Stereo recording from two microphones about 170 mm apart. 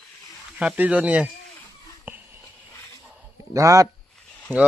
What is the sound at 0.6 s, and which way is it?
Speech, 10° right (ahead or behind).